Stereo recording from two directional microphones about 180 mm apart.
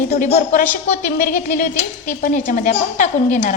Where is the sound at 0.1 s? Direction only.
40° left (ahead or behind).